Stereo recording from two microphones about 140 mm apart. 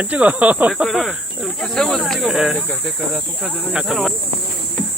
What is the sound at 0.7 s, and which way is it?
Speech, centre (ahead or behind).